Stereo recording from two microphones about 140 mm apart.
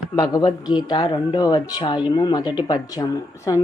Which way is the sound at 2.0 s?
30° left (ahead or behind).